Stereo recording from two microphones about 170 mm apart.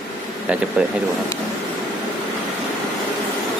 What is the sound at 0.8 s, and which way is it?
Speech, 5° right (ahead or behind).